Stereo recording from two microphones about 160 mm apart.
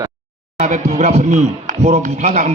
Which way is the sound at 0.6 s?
45° right (ahead or behind).